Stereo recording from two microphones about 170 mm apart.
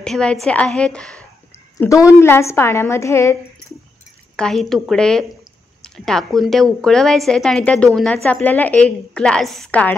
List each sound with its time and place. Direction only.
0.0 s speech: 5° left (ahead or behind)
1.8 s a woman's voice: 20° left (ahead or behind)
4.4 s speech: centre (ahead or behind)